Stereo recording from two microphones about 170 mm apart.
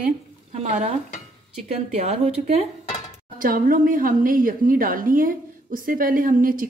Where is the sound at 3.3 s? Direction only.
55° right (ahead or behind).